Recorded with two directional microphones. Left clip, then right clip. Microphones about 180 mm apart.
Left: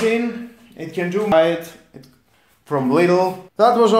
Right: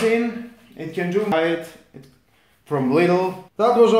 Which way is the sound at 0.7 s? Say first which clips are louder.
Left 1 dB; 30° left (ahead or behind).